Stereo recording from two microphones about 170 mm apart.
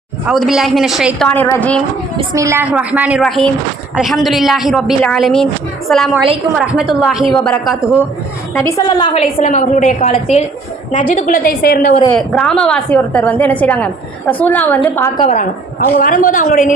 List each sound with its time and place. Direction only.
0.3 s a woman's voice: centre (ahead or behind)
1.3 s a woman's voice: 10° left (ahead or behind)
2.3 s a woman's voice: 15° right (ahead or behind); by 7.9 s centre (ahead or behind)
8.5 s a woman's voice: 15° left (ahead or behind)
9.1 s a woman's voice: 45° left (ahead or behind)
11.1 s a woman's voice: 50° left (ahead or behind)
12.1 s a woman's voice: 5° left (ahead or behind)
15.2 s a woman's voice: 50° left (ahead or behind)